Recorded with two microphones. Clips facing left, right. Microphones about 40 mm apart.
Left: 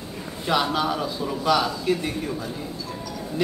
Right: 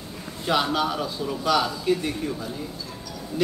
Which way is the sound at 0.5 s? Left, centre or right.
Centre.